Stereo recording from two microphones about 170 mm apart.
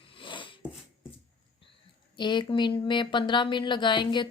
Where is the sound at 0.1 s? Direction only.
30° left (ahead or behind).